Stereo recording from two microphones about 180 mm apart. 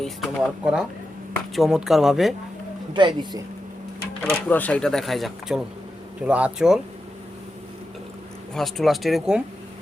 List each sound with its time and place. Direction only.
0.0 s speech: centre (ahead or behind)
2.9 s speech: 25° right (ahead or behind)
4.2 s speech: 10° left (ahead or behind); by 6.7 s 5° right (ahead or behind)
8.5 s speech: centre (ahead or behind)